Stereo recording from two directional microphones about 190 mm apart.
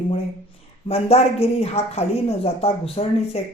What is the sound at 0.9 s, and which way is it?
Speech, 30° left (ahead or behind).